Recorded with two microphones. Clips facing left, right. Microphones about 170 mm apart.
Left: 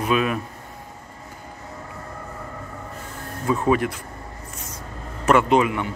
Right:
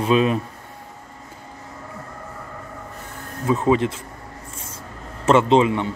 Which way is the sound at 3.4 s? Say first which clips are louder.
Right 2 dB; 20° right (ahead or behind).